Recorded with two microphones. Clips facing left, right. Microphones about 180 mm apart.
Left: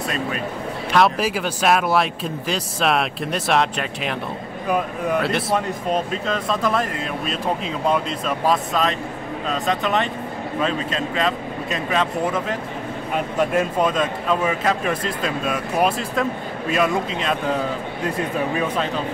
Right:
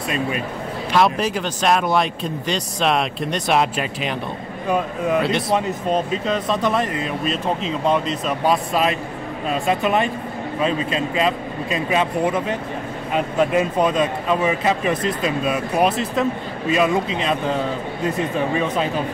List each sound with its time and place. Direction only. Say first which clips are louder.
0.9 s speech: even; centre (ahead or behind)
8.3 s speech: right 1 dB; 10° right (ahead or behind)
18.5 s speech: right 2 dB; 5° left (ahead or behind)